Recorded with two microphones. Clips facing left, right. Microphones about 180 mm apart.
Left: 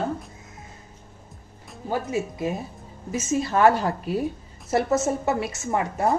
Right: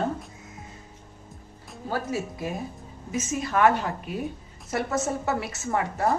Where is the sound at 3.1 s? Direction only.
30° left (ahead or behind).